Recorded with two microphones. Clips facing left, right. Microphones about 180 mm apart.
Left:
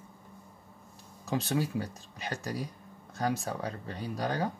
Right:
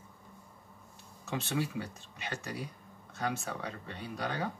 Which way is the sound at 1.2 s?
40° left (ahead or behind).